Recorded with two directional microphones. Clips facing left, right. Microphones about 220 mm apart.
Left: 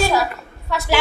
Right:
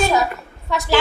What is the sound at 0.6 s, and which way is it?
Speech, 15° right (ahead or behind).